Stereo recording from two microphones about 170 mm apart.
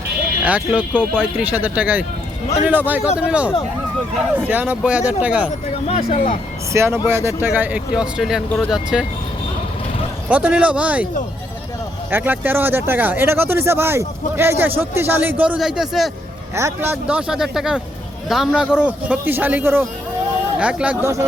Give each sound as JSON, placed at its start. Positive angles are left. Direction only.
{"t": 0.4, "sound": "speech", "side_deg": -10}
{"t": 5.9, "sound": "speech", "side_deg": 40}
{"t": 6.7, "sound": "speech", "side_deg": -15}
{"t": 10.2, "sound": "speech", "side_deg": -10}
{"t": 12.1, "sound": "speech", "side_deg": -10}
{"t": 16.6, "sound": "speech", "side_deg": -15}